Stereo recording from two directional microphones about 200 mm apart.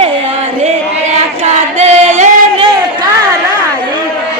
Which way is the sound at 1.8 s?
35° right (ahead or behind).